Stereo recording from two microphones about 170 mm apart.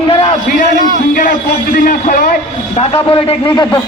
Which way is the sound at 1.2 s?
55° left (ahead or behind).